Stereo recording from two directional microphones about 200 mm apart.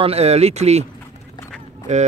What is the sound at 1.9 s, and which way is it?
Speech, 35° right (ahead or behind).